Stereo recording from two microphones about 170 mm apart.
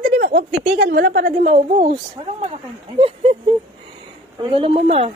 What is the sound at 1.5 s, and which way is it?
A woman's voice, 40° right (ahead or behind).